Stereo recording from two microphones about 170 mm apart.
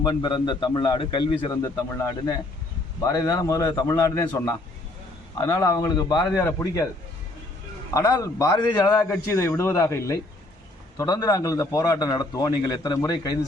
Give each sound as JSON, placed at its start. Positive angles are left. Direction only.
{"t": 0.1, "sound": "a man's voice", "side_deg": 25}
{"t": 7.9, "sound": "a man's voice", "side_deg": 20}